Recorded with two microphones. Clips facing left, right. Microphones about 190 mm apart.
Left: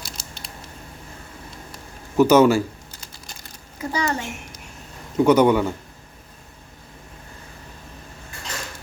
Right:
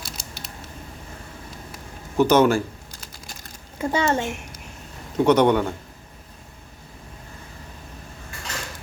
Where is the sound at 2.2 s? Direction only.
5° left (ahead or behind).